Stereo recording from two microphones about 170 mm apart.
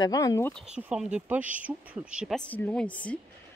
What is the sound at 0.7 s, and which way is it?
Speech, 5° right (ahead or behind).